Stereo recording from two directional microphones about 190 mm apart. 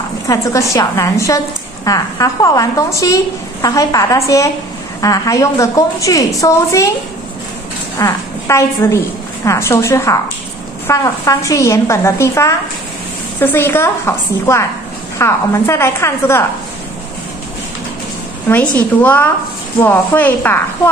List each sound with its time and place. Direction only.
0.3 s a woman's voice: 15° left (ahead or behind)
8.0 s a woman's voice: 15° left (ahead or behind)
18.8 s a woman's voice: 10° left (ahead or behind)